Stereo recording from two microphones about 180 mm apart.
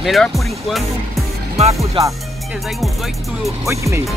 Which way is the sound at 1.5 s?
35° right (ahead or behind).